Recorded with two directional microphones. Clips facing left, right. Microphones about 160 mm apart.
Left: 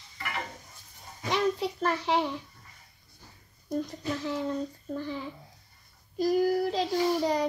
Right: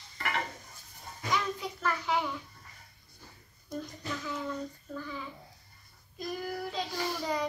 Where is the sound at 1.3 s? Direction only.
30° left (ahead or behind).